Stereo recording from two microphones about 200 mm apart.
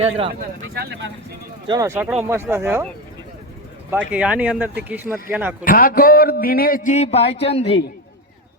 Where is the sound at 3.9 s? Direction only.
5° right (ahead or behind).